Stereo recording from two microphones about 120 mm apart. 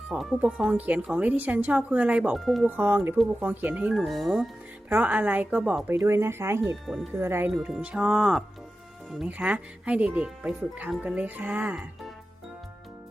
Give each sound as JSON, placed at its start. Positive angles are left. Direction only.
{"t": 0.1, "sound": "speech", "side_deg": -5}
{"t": 2.6, "sound": "speech", "side_deg": -15}
{"t": 3.9, "sound": "speech", "side_deg": 0}
{"t": 4.9, "sound": "speech", "side_deg": -15}
{"t": 6.8, "sound": "speech", "side_deg": 0}
{"t": 7.2, "sound": "speech", "side_deg": -20}
{"t": 7.5, "sound": "speech", "side_deg": -5}